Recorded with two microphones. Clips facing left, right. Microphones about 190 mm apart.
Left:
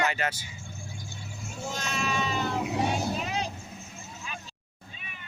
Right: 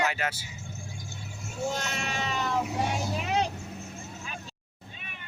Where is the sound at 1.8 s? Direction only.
65° right (ahead or behind).